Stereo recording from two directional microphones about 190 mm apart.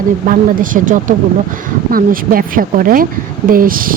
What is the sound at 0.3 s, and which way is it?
Speech, 45° right (ahead or behind).